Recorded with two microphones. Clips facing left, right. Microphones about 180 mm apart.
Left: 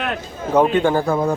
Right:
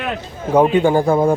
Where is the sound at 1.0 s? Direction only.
30° right (ahead or behind).